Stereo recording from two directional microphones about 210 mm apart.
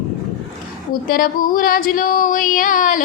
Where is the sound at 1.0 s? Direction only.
40° left (ahead or behind).